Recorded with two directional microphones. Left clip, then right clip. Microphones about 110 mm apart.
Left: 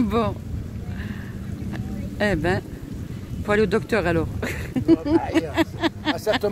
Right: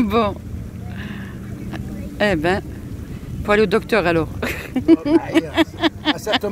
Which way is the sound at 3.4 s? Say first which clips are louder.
Right 4 dB; 20° right (ahead or behind).